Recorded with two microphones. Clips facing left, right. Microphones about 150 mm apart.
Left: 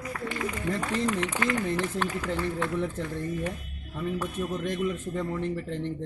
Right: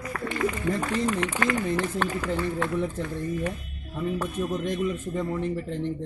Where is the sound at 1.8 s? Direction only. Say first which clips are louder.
Right 2 dB; 60° right (ahead or behind).